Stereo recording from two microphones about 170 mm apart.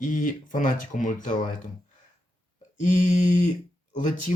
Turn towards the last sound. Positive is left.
turn(degrees=50)  # may be behind; listen again after turning